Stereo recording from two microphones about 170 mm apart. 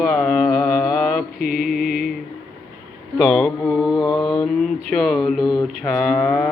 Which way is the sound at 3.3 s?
10° left (ahead or behind).